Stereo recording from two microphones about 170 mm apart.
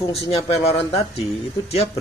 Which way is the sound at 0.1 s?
35° left (ahead or behind).